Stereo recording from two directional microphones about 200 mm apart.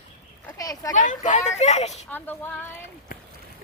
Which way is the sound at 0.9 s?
40° left (ahead or behind).